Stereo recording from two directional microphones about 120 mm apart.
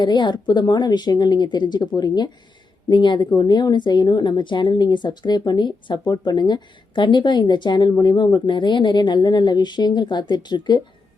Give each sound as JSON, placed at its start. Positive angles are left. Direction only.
{"t": 0.0, "sound": "a woman's voice", "side_deg": 40}